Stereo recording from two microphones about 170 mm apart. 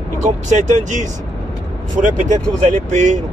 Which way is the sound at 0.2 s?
45° right (ahead or behind).